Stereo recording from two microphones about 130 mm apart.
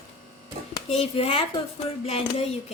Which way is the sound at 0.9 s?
50° left (ahead or behind).